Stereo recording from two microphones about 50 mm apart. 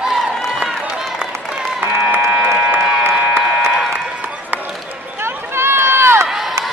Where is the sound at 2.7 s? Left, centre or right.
Right.